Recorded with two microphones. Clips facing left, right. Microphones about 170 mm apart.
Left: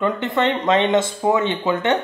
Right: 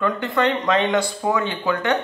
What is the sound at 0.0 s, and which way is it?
Speech, 25° left (ahead or behind).